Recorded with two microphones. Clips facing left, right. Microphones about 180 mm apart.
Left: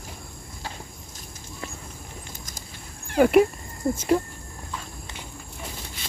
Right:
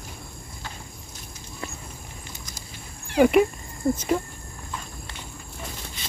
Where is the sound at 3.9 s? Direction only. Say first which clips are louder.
Left 2 dB; 10° left (ahead or behind).